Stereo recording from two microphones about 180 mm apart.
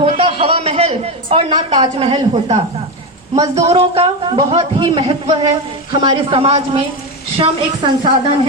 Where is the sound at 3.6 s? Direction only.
35° right (ahead or behind).